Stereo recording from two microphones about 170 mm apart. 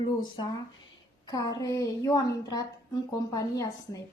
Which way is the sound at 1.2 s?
25° left (ahead or behind).